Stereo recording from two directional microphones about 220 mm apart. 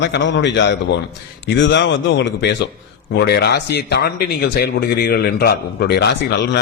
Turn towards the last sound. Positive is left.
turn(degrees=50)  # may be behind; listen again after turning